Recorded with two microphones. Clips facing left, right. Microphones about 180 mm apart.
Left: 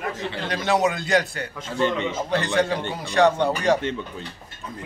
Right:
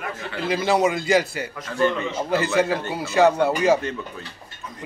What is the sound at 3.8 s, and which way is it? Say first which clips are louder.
Speech: left 1 dB; 25° left (ahead or behind).